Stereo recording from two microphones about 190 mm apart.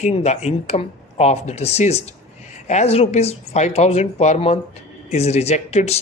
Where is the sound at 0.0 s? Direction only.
35° left (ahead or behind).